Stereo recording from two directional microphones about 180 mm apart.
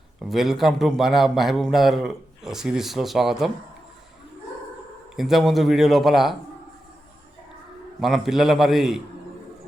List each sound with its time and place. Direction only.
0.2 s a man's voice: centre (ahead or behind)
5.1 s a man's voice: centre (ahead or behind)
8.0 s a man's voice: centre (ahead or behind)